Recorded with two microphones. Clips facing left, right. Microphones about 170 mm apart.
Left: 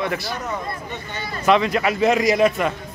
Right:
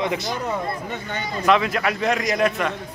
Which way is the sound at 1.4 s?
Centre (ahead or behind).